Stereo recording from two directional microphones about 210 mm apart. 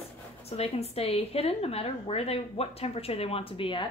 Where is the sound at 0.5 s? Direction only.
30° left (ahead or behind).